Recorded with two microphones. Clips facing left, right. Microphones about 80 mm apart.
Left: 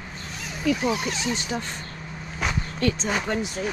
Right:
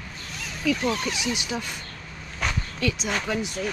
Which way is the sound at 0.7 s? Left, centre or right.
Centre.